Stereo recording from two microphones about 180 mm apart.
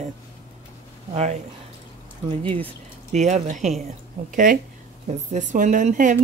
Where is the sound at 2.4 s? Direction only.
30° right (ahead or behind).